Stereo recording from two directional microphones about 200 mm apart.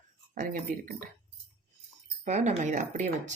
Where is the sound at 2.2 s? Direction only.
35° right (ahead or behind).